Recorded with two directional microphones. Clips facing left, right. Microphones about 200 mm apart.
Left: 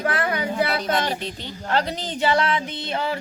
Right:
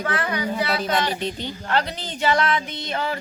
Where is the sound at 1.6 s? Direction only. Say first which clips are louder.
Left 2 dB; 35° left (ahead or behind).